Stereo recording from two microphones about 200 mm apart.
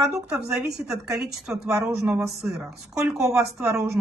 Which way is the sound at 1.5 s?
5° right (ahead or behind).